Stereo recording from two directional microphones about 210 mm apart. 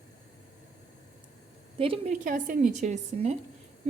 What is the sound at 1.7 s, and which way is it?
Speech, 25° right (ahead or behind).